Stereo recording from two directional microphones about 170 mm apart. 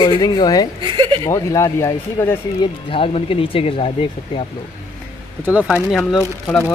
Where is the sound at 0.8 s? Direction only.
30° right (ahead or behind).